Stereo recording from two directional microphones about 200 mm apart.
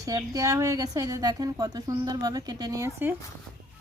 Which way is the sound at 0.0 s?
15° right (ahead or behind).